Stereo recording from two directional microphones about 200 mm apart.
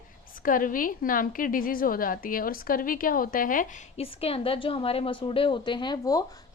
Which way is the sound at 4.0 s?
30° left (ahead or behind).